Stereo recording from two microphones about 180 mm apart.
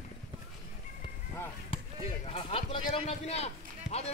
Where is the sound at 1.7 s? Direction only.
30° left (ahead or behind).